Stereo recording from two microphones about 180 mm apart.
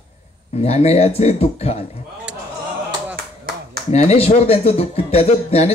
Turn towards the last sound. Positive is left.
turn(degrees=35)  # may be behind; listen again after turning